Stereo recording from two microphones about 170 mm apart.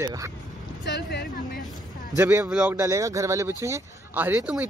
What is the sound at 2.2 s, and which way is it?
Speech, 15° right (ahead or behind).